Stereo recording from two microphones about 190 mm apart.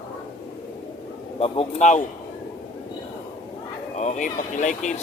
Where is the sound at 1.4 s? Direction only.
35° left (ahead or behind).